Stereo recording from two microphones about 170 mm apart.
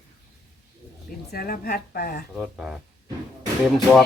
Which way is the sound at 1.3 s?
60° left (ahead or behind).